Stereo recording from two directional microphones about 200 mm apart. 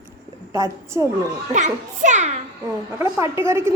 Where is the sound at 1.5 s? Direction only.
35° right (ahead or behind).